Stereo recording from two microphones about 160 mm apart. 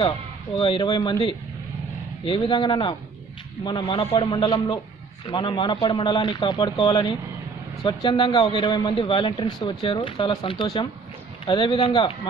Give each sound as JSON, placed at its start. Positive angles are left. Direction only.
{"t": 0.6, "sound": "a man's voice", "side_deg": 30}